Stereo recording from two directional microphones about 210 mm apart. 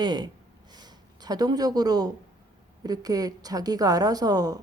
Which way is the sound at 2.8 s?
20° right (ahead or behind).